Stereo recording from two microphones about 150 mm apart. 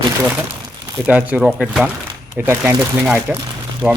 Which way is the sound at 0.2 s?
10° right (ahead or behind).